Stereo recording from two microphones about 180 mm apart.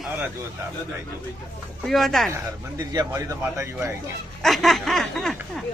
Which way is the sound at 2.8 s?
20° right (ahead or behind).